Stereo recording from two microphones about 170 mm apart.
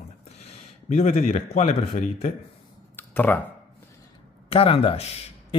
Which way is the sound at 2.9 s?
10° left (ahead or behind).